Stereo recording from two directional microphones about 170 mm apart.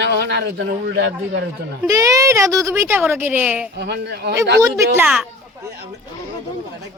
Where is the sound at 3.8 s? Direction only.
75° right (ahead or behind).